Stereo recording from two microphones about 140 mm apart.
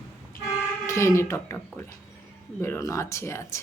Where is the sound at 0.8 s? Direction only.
20° left (ahead or behind).